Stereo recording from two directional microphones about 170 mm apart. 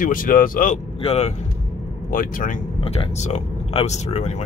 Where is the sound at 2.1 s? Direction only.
50° left (ahead or behind).